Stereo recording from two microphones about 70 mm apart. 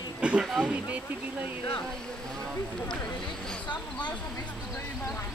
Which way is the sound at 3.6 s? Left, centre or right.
Left.